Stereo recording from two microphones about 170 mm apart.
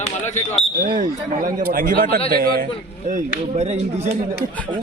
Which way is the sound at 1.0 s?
55° right (ahead or behind).